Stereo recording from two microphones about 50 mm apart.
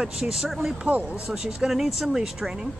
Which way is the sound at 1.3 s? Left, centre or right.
Centre.